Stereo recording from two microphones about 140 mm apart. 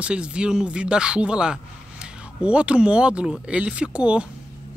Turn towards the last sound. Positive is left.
turn(degrees=-10)  # may be behind; listen again after turning